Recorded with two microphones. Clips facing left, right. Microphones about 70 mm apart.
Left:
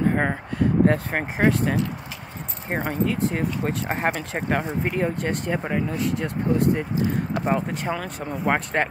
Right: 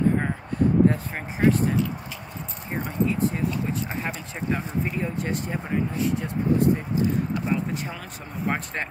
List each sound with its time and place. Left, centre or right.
0.1 s speech: left
2.7 s speech: left
3.1 s speech: left
7.3 s speech: left
7.9 s speech: left